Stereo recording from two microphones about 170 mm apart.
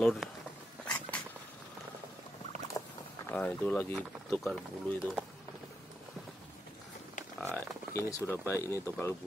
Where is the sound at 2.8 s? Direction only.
15° left (ahead or behind); by 5.3 s 5° right (ahead or behind).